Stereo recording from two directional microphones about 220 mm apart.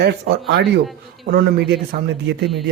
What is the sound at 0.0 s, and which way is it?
Speech, 50° right (ahead or behind).